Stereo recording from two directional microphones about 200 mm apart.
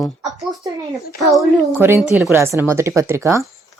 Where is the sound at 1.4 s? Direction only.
10° right (ahead or behind).